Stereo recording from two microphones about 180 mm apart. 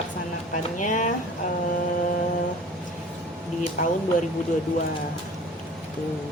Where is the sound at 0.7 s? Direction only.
45° left (ahead or behind).